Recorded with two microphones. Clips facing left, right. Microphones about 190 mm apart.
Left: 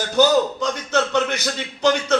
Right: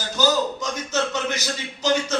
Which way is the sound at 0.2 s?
60° left (ahead or behind).